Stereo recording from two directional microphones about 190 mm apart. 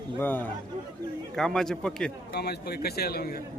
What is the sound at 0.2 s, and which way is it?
A man's voice, 10° left (ahead or behind).